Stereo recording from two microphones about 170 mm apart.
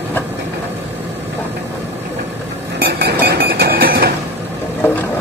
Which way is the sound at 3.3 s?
70° right (ahead or behind).